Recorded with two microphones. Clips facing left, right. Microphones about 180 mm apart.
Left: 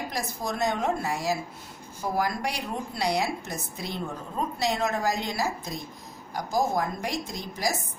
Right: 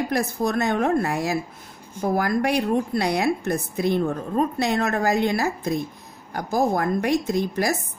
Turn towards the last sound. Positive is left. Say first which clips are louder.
# right 8 dB
turn(degrees=-60)  # may be behind; listen again after turning